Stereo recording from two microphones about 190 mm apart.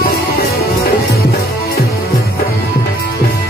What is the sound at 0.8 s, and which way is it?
Music, 55° left (ahead or behind).